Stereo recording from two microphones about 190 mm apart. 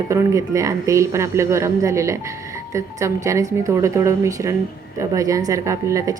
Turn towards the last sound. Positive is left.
turn(degrees=-15)  # may be behind; listen again after turning